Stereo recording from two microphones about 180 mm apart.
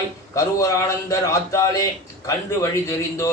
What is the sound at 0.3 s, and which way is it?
A man's voice, 15° left (ahead or behind).